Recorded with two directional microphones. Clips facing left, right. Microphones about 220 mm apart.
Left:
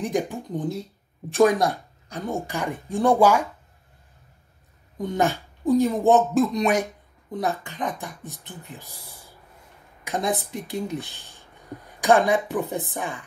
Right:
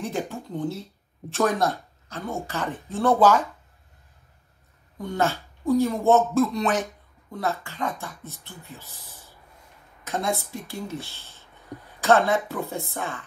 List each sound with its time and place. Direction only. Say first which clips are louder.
0.0 s speech: left 4 dB; 15° left (ahead or behind)
4.9 s speech: left 2 dB; 20° left (ahead or behind)
10.0 s speech: left 2 dB; 15° left (ahead or behind)